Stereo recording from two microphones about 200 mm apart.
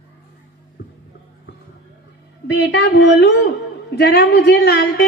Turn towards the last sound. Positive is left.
turn(degrees=55)  # may be behind; listen again after turning